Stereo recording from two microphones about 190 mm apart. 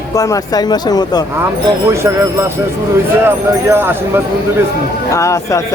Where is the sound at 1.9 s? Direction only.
15° right (ahead or behind).